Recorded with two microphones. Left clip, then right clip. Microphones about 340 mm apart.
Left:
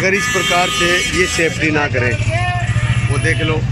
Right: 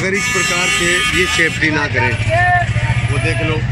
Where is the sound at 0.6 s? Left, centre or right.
Centre.